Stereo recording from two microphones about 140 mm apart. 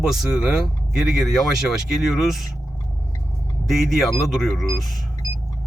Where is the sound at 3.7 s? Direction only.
Centre (ahead or behind).